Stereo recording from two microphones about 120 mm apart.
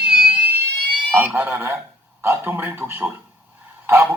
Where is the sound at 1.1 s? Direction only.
15° right (ahead or behind).